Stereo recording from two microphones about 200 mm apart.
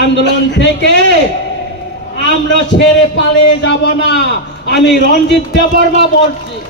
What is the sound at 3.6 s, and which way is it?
Speech, 60° left (ahead or behind).